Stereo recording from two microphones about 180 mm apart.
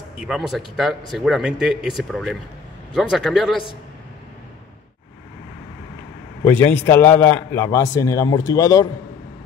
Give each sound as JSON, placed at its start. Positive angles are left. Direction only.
{"t": 0.2, "sound": "speech", "side_deg": 0}
{"t": 6.9, "sound": "a man's voice", "side_deg": 10}